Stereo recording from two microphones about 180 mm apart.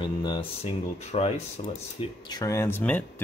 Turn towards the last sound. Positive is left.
turn(degrees=10)  # may be behind; listen again after turning